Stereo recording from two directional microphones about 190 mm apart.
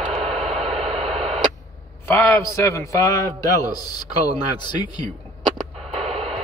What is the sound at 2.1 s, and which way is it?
A man's voice, 15° left (ahead or behind).